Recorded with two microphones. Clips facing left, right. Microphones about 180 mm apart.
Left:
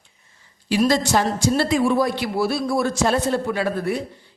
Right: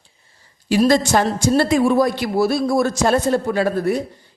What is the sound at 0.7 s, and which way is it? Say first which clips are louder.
A man's voice: right 3 dB; 50° right (ahead or behind).